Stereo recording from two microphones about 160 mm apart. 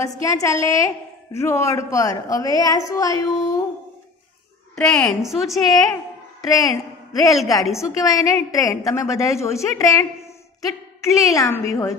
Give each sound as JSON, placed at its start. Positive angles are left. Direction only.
{"t": 0.0, "sound": "a woman's voice", "side_deg": 20}
{"t": 4.7, "sound": "a woman's voice", "side_deg": 5}
{"t": 6.5, "sound": "a man's voice", "side_deg": 20}